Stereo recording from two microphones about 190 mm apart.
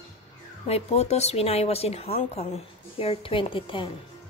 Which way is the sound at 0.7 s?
35° left (ahead or behind).